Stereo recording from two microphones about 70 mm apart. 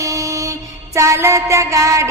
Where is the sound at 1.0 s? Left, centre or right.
Right.